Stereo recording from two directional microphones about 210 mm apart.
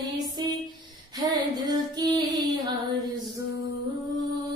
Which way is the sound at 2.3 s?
20° right (ahead or behind).